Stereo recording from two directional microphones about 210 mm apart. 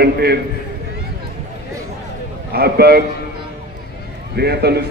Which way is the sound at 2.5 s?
50° right (ahead or behind).